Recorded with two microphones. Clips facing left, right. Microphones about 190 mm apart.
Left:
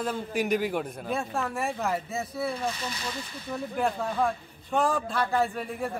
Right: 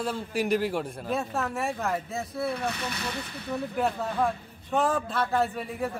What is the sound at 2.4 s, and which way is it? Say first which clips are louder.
Speech: right 2 dB; 65° right (ahead or behind).